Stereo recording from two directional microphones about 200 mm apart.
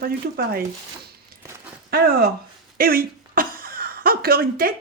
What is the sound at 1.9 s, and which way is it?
Speech, 50° right (ahead or behind).